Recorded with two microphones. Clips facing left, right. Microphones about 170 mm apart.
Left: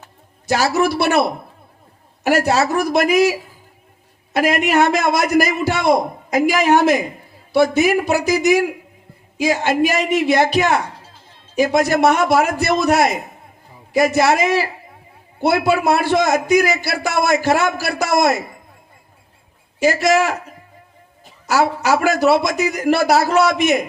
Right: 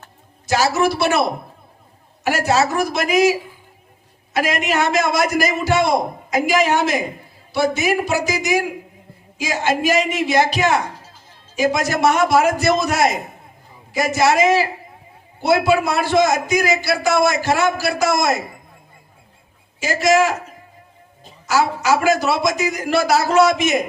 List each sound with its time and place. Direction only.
0.4 s a man's voice: 60° left (ahead or behind)
2.2 s a man's voice: 55° left (ahead or behind)
10.9 s music: 30° left (ahead or behind)
11.5 s a man's voice: 60° left (ahead or behind)
19.8 s a man's voice: 60° left (ahead or behind)
21.5 s a man's voice: 60° left (ahead or behind)